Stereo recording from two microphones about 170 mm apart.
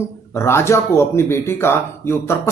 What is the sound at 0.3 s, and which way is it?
Speech, 15° left (ahead or behind).